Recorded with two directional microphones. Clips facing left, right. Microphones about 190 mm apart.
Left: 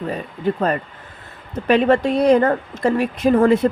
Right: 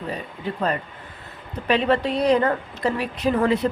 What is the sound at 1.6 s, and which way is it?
Speech, 50° left (ahead or behind).